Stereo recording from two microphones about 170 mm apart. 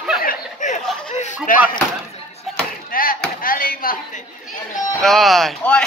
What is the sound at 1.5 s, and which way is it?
Speech, 55° left (ahead or behind).